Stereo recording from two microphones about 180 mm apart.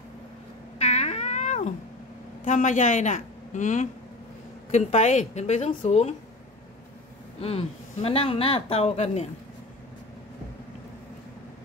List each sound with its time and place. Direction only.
0.7 s cat: 40° left (ahead or behind)
2.4 s speech: 45° left (ahead or behind)
7.4 s speech: 35° left (ahead or behind)